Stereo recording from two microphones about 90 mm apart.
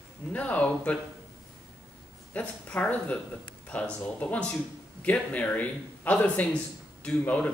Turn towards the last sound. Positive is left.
turn(degrees=15)  # may be behind; listen again after turning